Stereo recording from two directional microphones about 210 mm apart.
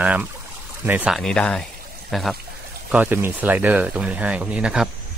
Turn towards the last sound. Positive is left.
turn(degrees=-5)  # may be behind; listen again after turning